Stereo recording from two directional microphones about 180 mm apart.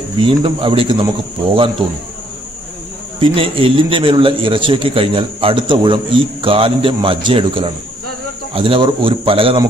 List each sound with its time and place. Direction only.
0.2 s a man's voice: 30° right (ahead or behind)
3.2 s a man's voice: 30° right (ahead or behind)